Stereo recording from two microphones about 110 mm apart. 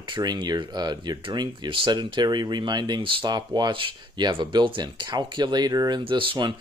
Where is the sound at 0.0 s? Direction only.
40° right (ahead or behind).